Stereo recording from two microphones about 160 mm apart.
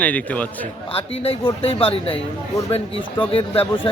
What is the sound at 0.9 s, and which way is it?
Speech, 35° left (ahead or behind).